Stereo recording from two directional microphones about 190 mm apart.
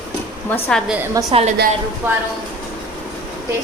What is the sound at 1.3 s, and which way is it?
Speech, 35° right (ahead or behind).